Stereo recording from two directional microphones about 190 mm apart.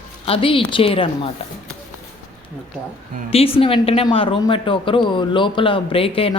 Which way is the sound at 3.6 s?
30° left (ahead or behind).